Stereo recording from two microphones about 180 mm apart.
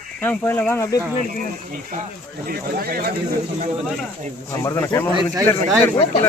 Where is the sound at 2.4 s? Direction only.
55° right (ahead or behind).